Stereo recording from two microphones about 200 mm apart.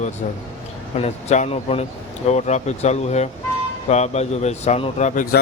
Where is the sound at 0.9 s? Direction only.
35° left (ahead or behind).